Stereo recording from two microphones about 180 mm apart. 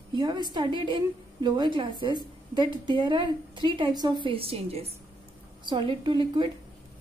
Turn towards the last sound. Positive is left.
turn(degrees=-25)  # may be behind; listen again after turning